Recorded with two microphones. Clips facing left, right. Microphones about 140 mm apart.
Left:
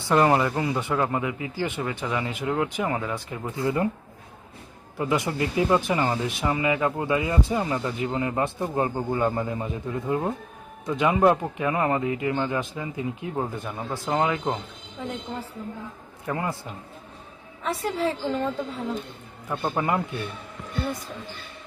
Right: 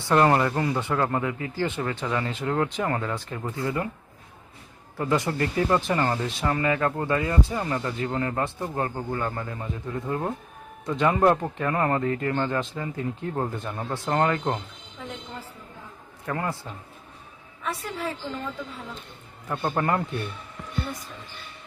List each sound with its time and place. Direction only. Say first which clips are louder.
0.1 s speech: even; 5° left (ahead or behind)
4.9 s speech: even; 15° left (ahead or behind)
16.2 s speech: left 1 dB; 15° left (ahead or behind)
17.6 s a woman's voice: left 5 dB; 30° left (ahead or behind)
19.5 s speech: even; 5° left (ahead or behind)